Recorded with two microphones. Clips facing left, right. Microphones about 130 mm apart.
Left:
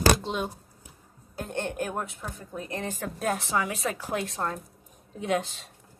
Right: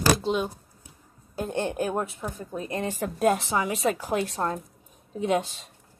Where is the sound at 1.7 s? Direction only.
25° right (ahead or behind).